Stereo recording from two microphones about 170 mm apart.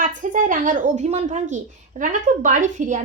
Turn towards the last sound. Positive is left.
turn(degrees=-50)  # may be behind; listen again after turning